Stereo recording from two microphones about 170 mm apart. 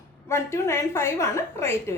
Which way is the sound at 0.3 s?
15° left (ahead or behind).